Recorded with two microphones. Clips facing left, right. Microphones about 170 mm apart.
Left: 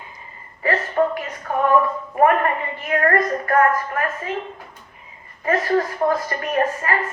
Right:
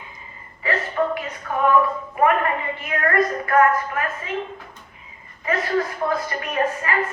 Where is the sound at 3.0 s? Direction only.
40° left (ahead or behind).